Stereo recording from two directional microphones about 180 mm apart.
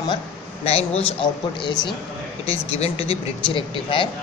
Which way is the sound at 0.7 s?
35° left (ahead or behind).